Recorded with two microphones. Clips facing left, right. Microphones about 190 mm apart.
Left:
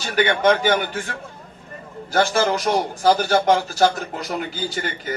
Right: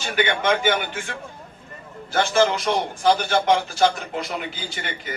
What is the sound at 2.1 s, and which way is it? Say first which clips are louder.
A man's voice: even; 40° left (ahead or behind).